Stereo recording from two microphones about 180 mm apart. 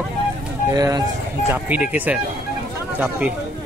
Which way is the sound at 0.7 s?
20° right (ahead or behind).